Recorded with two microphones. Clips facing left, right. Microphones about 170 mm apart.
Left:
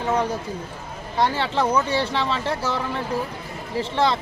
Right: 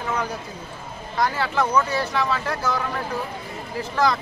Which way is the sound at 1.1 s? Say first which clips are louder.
Left 1 dB; 30° left (ahead or behind).